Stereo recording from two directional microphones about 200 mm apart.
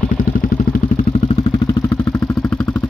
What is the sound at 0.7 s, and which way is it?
Vehicle, 40° left (ahead or behind).